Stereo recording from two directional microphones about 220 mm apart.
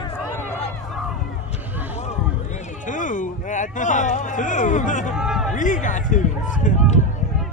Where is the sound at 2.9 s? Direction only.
35° left (ahead or behind).